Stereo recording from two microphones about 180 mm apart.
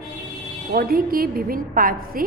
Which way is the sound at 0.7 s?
55° right (ahead or behind).